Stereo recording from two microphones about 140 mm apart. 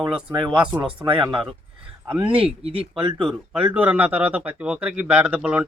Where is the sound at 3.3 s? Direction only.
10° right (ahead or behind).